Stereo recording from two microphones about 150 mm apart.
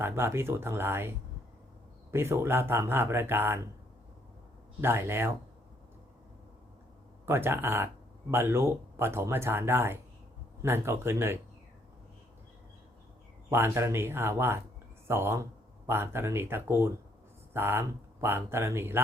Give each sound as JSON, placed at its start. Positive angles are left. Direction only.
{"t": 0.0, "sound": "speech", "side_deg": -15}
{"t": 4.8, "sound": "speech", "side_deg": -15}
{"t": 7.3, "sound": "speech", "side_deg": -15}
{"t": 13.5, "sound": "speech", "side_deg": -15}